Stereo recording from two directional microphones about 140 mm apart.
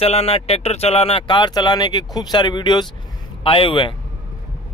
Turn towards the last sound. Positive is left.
turn(degrees=35)  # may be behind; listen again after turning